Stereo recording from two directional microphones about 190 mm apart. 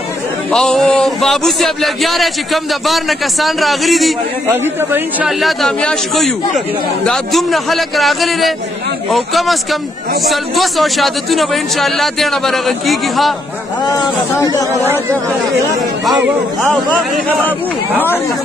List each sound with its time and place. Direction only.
0.5 s a man's voice: 5° left (ahead or behind)
4.5 s a man's voice: 10° right (ahead or behind)
5.4 s a man's voice: centre (ahead or behind)
13.9 s speech: 20° left (ahead or behind)
16.7 s speech: 5° left (ahead or behind)